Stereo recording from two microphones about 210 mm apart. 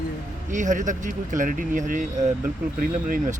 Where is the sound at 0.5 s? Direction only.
35° right (ahead or behind).